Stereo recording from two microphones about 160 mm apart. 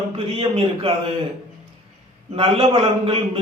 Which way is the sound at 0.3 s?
35° right (ahead or behind).